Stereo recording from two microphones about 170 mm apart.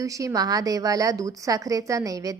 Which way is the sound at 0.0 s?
20° right (ahead or behind).